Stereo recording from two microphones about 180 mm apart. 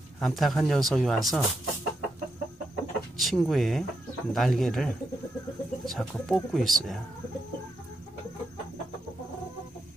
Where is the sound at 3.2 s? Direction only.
Centre (ahead or behind).